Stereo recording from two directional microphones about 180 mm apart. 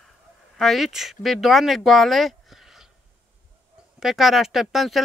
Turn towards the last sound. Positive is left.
turn(degrees=0)  # may be behind; listen again after turning